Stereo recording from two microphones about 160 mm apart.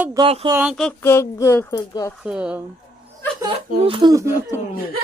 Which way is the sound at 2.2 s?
5° right (ahead or behind).